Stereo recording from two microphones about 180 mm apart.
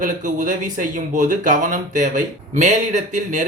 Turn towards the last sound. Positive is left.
turn(degrees=-45)  # may be behind; listen again after turning